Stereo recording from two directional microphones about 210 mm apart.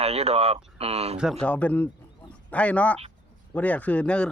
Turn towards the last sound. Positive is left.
turn(degrees=5)  # may be behind; listen again after turning